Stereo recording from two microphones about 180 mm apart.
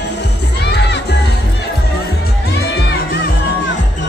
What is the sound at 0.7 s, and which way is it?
Music, 65° left (ahead or behind).